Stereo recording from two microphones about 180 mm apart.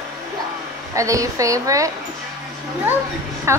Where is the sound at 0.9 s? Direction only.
15° right (ahead or behind).